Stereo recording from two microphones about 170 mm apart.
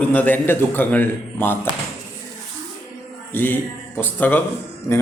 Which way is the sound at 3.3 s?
10° left (ahead or behind).